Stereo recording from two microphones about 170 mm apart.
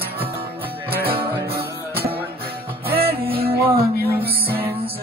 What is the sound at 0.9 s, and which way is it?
Music, 65° right (ahead or behind).